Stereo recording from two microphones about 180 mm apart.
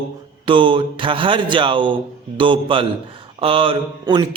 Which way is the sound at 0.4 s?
30° right (ahead or behind).